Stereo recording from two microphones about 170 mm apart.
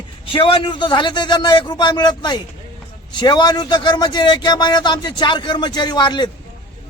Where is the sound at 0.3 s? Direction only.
30° left (ahead or behind).